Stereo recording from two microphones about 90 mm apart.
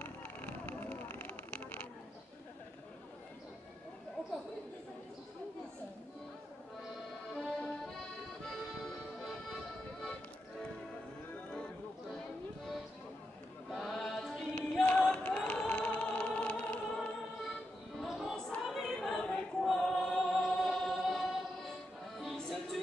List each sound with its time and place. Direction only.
0.0 s vehicle: 15° left (ahead or behind)
7.3 s accordion: 10° left (ahead or behind)
13.7 s choir: centre (ahead or behind)
17.9 s music: centre (ahead or behind)
18.6 s choir: centre (ahead or behind)
22.2 s music: centre (ahead or behind)